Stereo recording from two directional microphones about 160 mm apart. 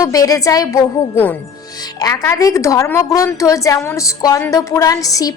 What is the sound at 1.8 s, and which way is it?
Speech, 25° left (ahead or behind).